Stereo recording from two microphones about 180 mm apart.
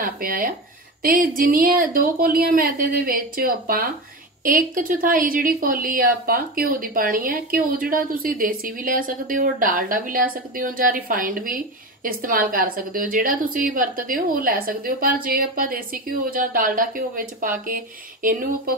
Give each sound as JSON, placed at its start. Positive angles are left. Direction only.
{"t": 0.0, "sound": "a woman's voice", "side_deg": -50}